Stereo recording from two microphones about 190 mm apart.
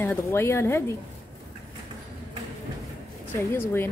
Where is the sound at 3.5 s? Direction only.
10° left (ahead or behind).